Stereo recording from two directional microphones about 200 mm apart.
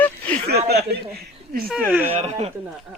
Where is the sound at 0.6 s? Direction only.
55° right (ahead or behind).